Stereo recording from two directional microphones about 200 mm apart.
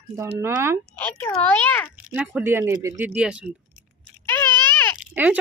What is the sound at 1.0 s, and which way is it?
Speech, 10° left (ahead or behind).